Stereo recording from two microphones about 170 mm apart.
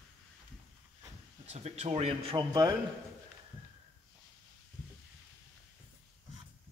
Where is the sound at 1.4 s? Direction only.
40° right (ahead or behind); by 2.7 s 25° right (ahead or behind).